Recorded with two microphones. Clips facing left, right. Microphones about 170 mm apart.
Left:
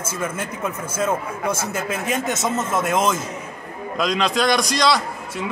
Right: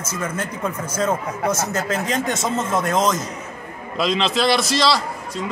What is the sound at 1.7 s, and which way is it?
Speech, 10° left (ahead or behind).